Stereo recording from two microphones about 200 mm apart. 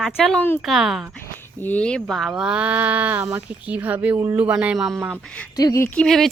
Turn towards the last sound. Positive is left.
turn(degrees=0)  # may be behind; listen again after turning